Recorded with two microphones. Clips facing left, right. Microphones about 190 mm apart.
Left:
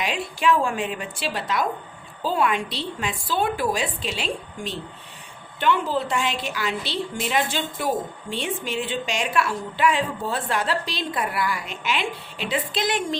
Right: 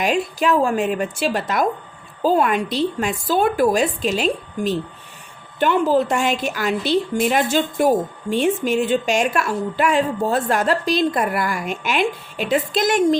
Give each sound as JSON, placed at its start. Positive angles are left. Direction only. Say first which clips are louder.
{"t": 0.0, "sound": "a woman's voice", "louder": "right 5 dB", "side_deg": -40}